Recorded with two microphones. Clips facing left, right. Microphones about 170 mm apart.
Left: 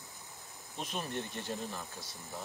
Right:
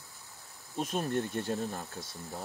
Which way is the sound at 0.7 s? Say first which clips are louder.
Right 7 dB; 45° right (ahead or behind).